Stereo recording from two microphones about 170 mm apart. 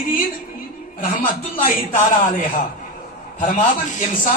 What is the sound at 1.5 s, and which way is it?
Speech, 50° left (ahead or behind).